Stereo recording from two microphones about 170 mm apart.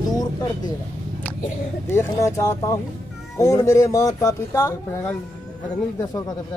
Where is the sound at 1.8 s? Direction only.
15° left (ahead or behind).